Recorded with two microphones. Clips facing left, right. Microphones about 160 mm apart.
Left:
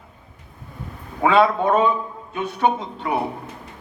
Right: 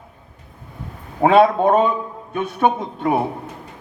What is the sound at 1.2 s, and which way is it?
A man's voice, 50° right (ahead or behind).